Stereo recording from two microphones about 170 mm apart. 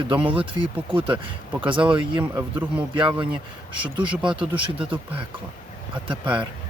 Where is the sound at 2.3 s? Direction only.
10° right (ahead or behind).